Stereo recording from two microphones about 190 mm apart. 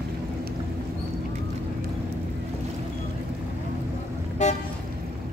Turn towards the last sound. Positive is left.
turn(degrees=35)  # may be behind; listen again after turning